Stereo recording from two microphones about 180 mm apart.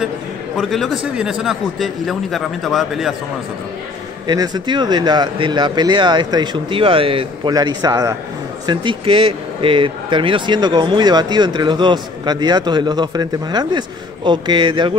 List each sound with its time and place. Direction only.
0.6 s a man's voice: centre (ahead or behind)
4.3 s speech: 25° right (ahead or behind)